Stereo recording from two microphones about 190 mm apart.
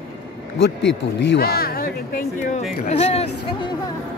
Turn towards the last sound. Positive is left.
turn(degrees=35)  # may be behind; listen again after turning